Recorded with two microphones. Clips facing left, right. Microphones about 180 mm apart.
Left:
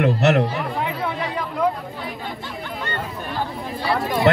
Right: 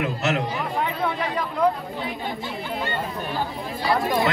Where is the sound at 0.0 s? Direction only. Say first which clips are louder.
Left 7 dB; 65° left (ahead or behind).